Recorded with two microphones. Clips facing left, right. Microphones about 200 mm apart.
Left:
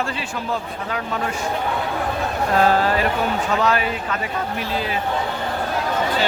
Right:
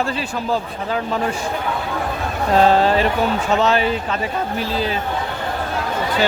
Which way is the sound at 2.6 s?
25° right (ahead or behind).